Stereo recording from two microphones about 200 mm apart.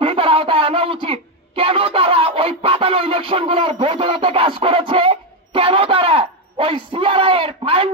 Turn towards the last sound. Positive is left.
turn(degrees=-25)  # may be behind; listen again after turning